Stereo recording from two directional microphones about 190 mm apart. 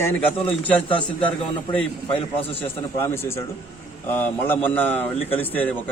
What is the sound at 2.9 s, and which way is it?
Speech, 15° left (ahead or behind).